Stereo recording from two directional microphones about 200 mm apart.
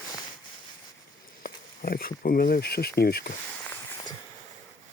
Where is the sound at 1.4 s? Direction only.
45° left (ahead or behind).